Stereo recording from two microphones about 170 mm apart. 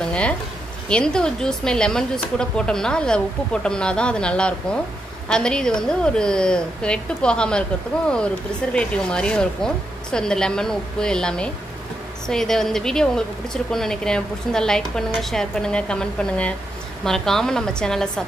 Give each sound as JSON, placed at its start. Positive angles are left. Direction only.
{"t": 0.0, "sound": "a sound", "side_deg": 5}
{"t": 0.8, "sound": "a woman's voice", "side_deg": 5}
{"t": 8.7, "sound": "a woman's voice", "side_deg": 5}